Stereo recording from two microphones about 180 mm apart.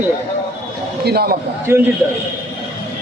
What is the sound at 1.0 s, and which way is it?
Speech, 60° right (ahead or behind).